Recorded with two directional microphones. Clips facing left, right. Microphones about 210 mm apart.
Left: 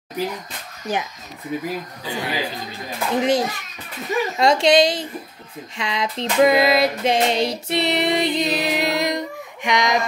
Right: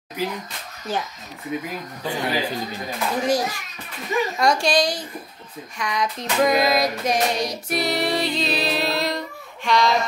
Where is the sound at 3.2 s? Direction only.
25° left (ahead or behind).